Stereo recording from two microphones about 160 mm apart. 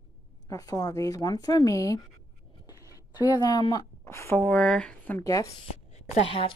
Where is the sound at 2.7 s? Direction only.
20° left (ahead or behind).